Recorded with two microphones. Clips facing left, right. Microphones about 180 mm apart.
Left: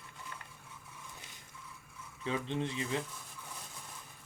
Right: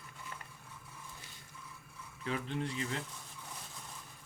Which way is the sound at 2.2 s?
20° left (ahead or behind).